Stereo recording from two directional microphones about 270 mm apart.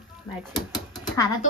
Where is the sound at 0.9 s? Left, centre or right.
Centre.